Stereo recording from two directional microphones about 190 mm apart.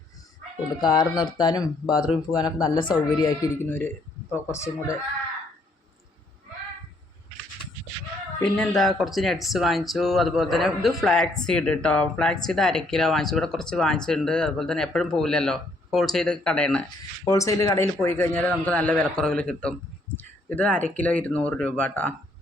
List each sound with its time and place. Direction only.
0.8 s a man's voice: 20° left (ahead or behind)
8.4 s speech: 5° left (ahead or behind)
17.2 s a man's voice: 15° left (ahead or behind)